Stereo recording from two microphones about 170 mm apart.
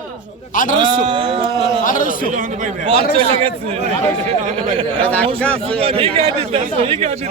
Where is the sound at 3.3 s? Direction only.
35° right (ahead or behind).